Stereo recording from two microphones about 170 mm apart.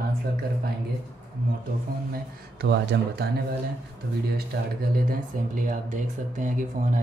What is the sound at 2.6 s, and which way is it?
Speech, 75° right (ahead or behind).